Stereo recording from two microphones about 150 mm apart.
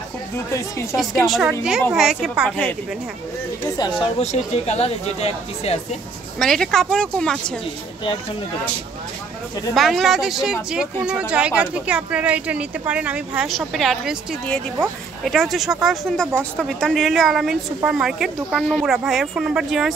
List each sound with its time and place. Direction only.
0.9 s speech: centre (ahead or behind)
4.2 s speech: 45° left (ahead or behind)
6.4 s speech: 5° left (ahead or behind)
9.8 s speech: centre (ahead or behind)